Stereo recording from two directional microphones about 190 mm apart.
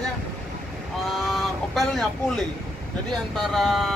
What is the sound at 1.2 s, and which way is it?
Vehicle, centre (ahead or behind).